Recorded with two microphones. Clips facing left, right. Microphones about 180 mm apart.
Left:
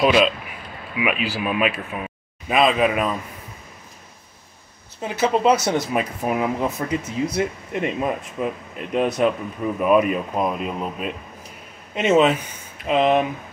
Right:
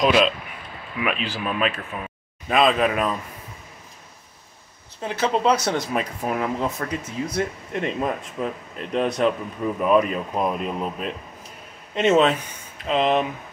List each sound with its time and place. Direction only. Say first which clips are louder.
0.0 s speech: left 2 dB; 5° left (ahead or behind)
5.0 s speech: left 2 dB; 10° left (ahead or behind)